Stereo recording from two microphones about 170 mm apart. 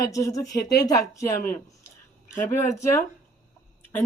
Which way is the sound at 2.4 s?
15° left (ahead or behind).